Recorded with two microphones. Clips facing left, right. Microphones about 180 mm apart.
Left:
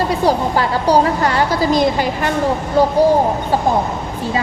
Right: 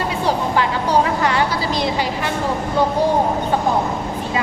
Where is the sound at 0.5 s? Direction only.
40° left (ahead or behind).